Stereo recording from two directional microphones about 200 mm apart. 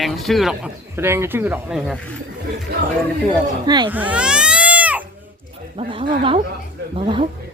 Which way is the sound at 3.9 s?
10° right (ahead or behind).